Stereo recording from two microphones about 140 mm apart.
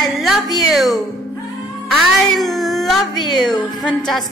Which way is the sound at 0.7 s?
Centre (ahead or behind).